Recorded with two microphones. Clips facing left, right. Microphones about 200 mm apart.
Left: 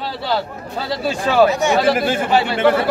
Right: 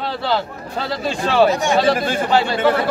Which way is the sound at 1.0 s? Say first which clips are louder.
Left 1 dB; 5° left (ahead or behind).